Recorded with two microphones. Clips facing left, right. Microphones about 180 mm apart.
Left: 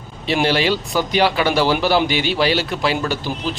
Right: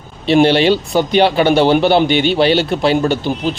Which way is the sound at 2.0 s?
5° left (ahead or behind).